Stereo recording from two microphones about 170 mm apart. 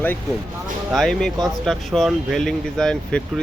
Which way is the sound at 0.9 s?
Centre (ahead or behind).